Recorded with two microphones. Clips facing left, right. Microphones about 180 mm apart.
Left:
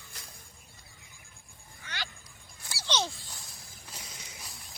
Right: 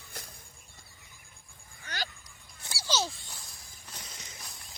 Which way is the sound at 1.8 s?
40° right (ahead or behind).